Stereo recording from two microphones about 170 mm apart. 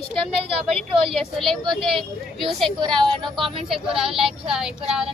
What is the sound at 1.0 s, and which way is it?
Speech, centre (ahead or behind).